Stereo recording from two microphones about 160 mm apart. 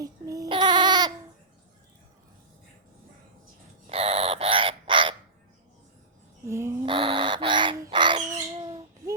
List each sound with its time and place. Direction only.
0.0 s child singing: 20° right (ahead or behind)
3.8 s bird: 40° right (ahead or behind)
6.4 s a sound: 15° right (ahead or behind)
6.8 s bird: 35° right (ahead or behind)